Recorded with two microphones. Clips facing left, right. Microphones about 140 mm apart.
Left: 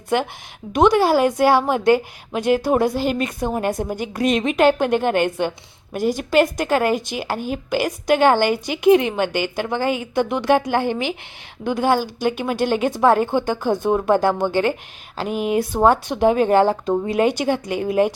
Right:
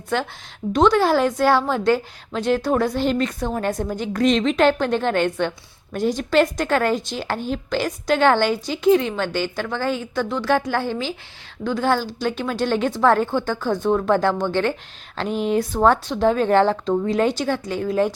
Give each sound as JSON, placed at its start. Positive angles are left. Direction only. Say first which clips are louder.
{"t": 0.1, "sound": "a woman's voice", "louder": "left 3 dB", "side_deg": 15}